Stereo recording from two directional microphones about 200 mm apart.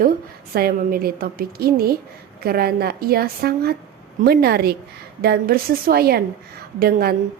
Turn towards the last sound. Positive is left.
turn(degrees=-50)  # may be behind; listen again after turning